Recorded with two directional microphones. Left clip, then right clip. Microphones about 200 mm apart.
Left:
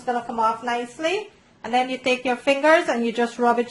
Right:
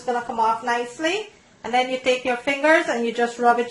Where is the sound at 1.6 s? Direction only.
45° left (ahead or behind).